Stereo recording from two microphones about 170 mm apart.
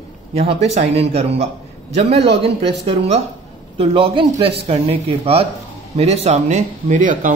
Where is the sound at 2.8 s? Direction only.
40° right (ahead or behind).